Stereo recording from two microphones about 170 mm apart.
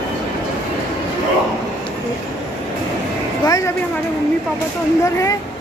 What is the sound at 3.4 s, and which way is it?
Music, 20° left (ahead or behind).